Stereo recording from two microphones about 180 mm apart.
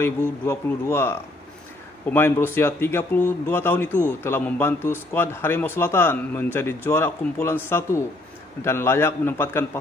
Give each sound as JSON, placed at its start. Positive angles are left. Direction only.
{"t": 0.5, "sound": "a man's voice", "side_deg": 15}